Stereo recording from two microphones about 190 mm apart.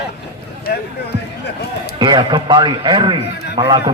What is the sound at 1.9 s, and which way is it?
A man's voice, 25° right (ahead or behind).